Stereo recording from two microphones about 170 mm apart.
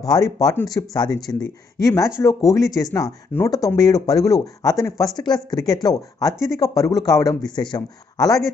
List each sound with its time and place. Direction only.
0.0 s speech: 20° left (ahead or behind)